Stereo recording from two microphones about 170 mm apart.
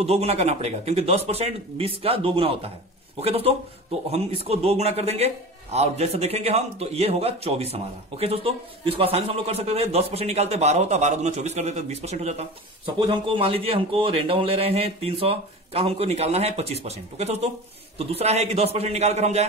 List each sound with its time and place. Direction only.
0.0 s a man's voice: 35° right (ahead or behind)